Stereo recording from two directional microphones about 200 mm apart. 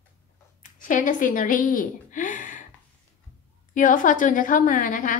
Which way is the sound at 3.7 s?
40° left (ahead or behind).